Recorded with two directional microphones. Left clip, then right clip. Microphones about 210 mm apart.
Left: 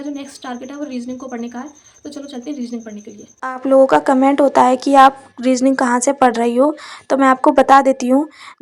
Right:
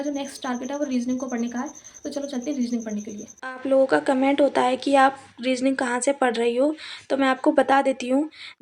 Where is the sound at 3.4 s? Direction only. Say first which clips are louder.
Left 9 dB; 20° left (ahead or behind).